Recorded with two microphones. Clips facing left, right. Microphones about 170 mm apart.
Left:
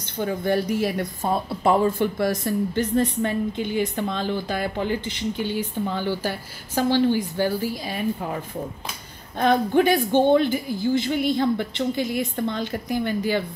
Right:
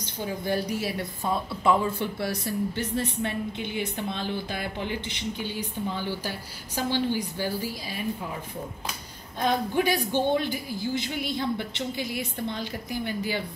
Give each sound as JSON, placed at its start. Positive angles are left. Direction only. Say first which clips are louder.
{"t": 0.0, "sound": "speech", "louder": "left 6 dB", "side_deg": 55}
{"t": 9.4, "sound": "speech", "louder": "left 6 dB", "side_deg": 55}